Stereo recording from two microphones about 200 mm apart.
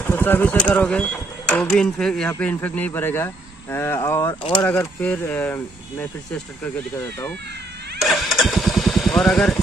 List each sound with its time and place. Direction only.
0.0 s speech: 10° left (ahead or behind)
4.4 s speech: 25° left (ahead or behind)
4.6 s speech: 10° left (ahead or behind)
8.0 s vehicle: centre (ahead or behind)